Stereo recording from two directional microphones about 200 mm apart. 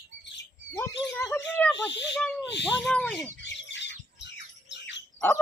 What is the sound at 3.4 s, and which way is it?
Squawk, 60° left (ahead or behind).